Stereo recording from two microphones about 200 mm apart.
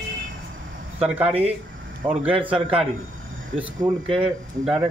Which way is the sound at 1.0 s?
5° right (ahead or behind).